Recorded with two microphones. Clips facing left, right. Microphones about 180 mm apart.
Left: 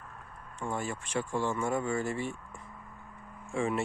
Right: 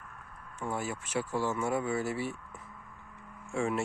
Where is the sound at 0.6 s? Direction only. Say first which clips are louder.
Even; 10° right (ahead or behind).